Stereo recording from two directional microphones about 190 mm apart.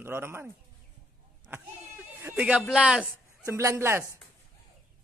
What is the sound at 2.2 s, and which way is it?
A man's voice, 10° right (ahead or behind).